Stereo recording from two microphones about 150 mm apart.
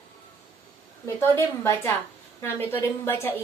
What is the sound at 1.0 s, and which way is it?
A woman's voice, 20° left (ahead or behind).